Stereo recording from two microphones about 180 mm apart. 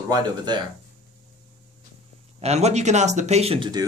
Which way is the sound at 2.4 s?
35° right (ahead or behind).